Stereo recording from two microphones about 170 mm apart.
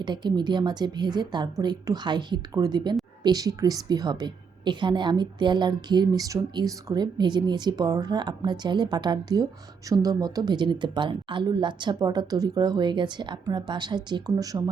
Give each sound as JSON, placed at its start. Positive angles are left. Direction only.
{"t": 0.0, "sound": "a woman's voice", "side_deg": -25}